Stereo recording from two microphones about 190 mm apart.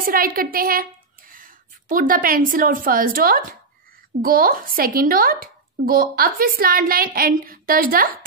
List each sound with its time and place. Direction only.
0.0 s speech: 50° right (ahead or behind)